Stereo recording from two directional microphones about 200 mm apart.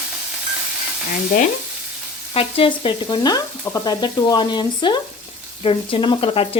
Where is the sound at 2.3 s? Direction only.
30° left (ahead or behind).